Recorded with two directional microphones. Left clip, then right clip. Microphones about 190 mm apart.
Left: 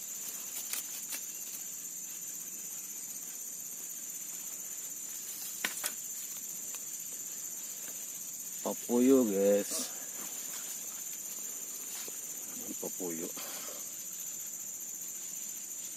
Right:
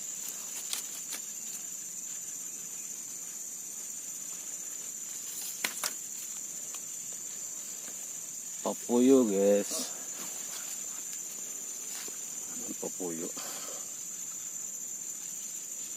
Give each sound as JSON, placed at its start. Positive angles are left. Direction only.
{"t": 8.6, "sound": "speech", "side_deg": -15}
{"t": 12.8, "sound": "cricket", "side_deg": -15}